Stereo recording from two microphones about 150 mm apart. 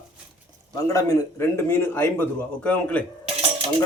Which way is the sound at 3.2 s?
40° right (ahead or behind).